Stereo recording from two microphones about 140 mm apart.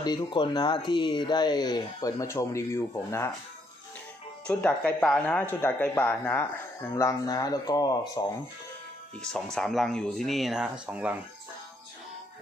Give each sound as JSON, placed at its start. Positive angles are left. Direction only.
{"t": 0.0, "sound": "speech", "side_deg": 30}
{"t": 4.5, "sound": "speech", "side_deg": 10}
{"t": 9.2, "sound": "speech", "side_deg": 5}